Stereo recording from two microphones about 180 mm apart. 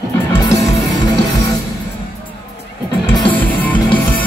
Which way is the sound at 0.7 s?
20° left (ahead or behind).